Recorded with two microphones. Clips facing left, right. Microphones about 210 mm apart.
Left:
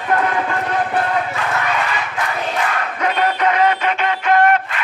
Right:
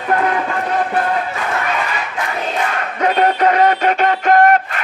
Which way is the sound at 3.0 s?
40° right (ahead or behind).